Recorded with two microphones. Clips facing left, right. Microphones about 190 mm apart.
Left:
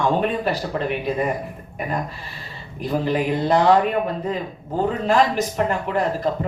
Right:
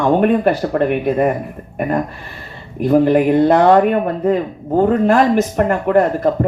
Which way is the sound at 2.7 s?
55° right (ahead or behind).